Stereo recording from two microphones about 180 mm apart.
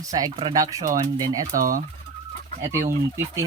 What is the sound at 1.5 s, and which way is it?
Fowl, 50° right (ahead or behind).